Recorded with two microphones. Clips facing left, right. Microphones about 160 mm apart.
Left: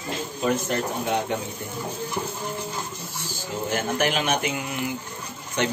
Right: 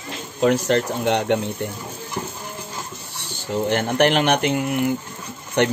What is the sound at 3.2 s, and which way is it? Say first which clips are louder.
Speech: right 7 dB; 65° right (ahead or behind).